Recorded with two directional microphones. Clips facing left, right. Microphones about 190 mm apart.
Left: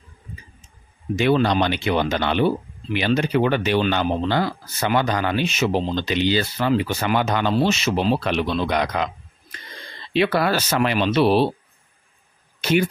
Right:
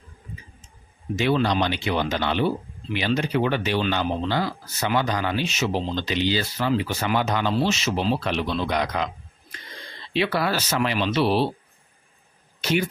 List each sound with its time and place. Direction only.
1.1 s speech: 55° left (ahead or behind)
10.1 s speech: 55° left (ahead or behind)